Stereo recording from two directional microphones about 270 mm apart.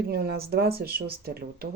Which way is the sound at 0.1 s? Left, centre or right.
Right.